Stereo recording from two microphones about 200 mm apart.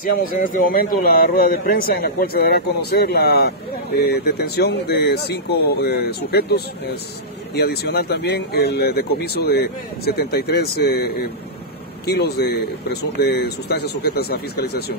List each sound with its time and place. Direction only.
0.0 s speech: 45° left (ahead or behind)